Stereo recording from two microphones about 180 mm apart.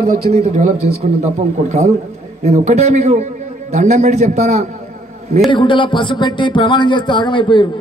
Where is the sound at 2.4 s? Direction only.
40° right (ahead or behind).